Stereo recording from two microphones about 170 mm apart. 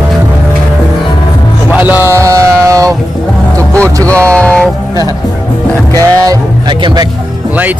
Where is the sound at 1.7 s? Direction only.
10° right (ahead or behind).